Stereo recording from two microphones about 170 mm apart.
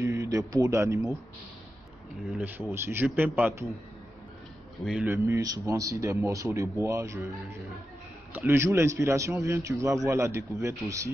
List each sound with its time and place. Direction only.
0.0 s speech: 20° right (ahead or behind)
2.3 s a man's voice: 10° right (ahead or behind)
5.0 s a man's voice: 15° right (ahead or behind)
8.3 s a man's voice: 15° right (ahead or behind)